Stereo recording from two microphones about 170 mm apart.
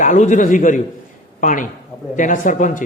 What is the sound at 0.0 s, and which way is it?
A man's voice, 45° left (ahead or behind).